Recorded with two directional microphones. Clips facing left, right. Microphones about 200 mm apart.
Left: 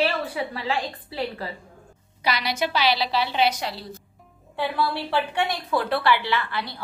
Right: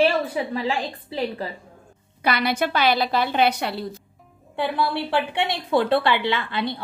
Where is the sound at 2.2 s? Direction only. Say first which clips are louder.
Right 3 dB; 55° right (ahead or behind).